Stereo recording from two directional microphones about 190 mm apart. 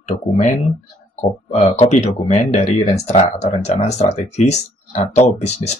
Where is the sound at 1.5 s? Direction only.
35° left (ahead or behind).